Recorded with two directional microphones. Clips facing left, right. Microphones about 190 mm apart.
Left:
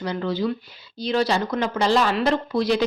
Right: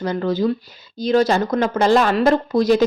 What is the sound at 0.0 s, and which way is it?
Speech, 45° right (ahead or behind).